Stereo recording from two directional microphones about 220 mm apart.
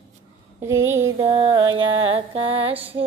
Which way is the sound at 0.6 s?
10° right (ahead or behind).